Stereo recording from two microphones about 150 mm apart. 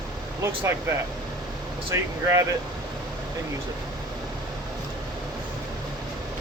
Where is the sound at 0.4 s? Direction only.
15° right (ahead or behind).